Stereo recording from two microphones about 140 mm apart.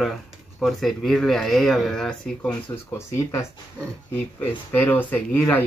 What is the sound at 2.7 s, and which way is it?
Speech, 15° left (ahead or behind).